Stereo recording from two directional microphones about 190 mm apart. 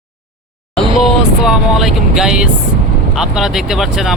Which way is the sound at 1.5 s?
Centre (ahead or behind).